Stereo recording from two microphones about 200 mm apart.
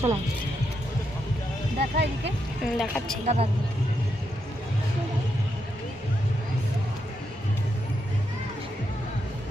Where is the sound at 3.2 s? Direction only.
30° right (ahead or behind).